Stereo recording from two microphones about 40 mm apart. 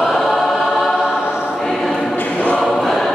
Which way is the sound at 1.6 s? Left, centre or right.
Centre.